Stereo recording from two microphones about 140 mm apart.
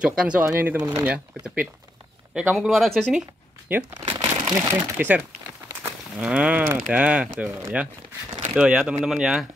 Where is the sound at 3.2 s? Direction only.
15° right (ahead or behind).